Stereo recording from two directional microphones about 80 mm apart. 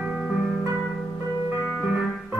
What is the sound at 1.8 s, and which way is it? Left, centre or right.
Music, centre.